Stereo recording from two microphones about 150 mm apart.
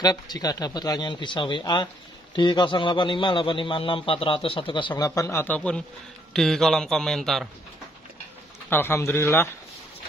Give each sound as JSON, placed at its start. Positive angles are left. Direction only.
{"t": 0.0, "sound": "a man's voice", "side_deg": 25}
{"t": 8.6, "sound": "a man's voice", "side_deg": 15}